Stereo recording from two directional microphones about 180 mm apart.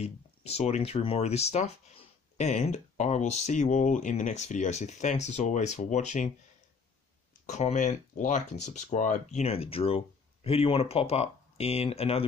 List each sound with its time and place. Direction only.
0.0 s speech: 35° left (ahead or behind)
7.4 s speech: 40° left (ahead or behind)